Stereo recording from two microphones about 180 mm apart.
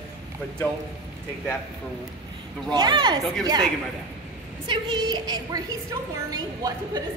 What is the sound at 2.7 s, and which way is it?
Speech, 25° right (ahead or behind).